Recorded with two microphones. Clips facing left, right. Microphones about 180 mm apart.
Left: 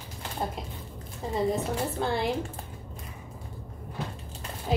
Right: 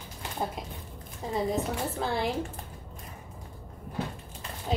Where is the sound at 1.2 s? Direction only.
Centre (ahead or behind).